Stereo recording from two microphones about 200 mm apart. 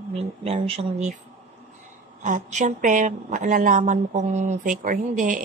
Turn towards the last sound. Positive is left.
turn(degrees=-40)  # may be behind; listen again after turning